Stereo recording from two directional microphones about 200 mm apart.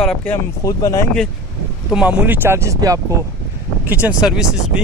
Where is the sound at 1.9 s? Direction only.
5° right (ahead or behind).